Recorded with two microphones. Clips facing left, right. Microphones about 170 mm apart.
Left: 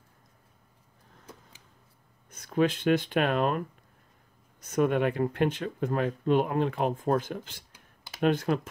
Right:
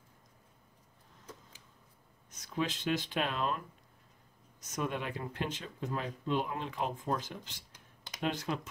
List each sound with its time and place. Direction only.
2.3 s speech: 55° left (ahead or behind)